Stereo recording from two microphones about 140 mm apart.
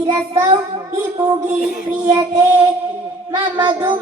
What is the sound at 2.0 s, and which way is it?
Child singing, 20° right (ahead or behind).